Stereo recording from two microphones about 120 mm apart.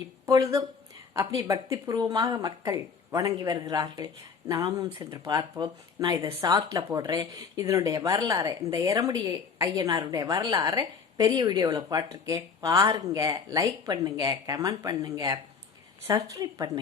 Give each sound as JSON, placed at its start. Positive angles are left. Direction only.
{"t": 0.3, "sound": "a woman's voice", "side_deg": -30}